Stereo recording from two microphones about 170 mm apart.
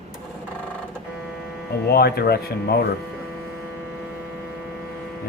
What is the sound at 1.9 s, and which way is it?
A man's voice, 70° left (ahead or behind).